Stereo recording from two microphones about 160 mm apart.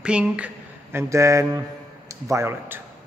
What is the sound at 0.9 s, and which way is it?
Speech, 20° right (ahead or behind).